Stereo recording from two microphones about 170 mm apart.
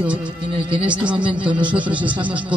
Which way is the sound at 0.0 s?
5° right (ahead or behind).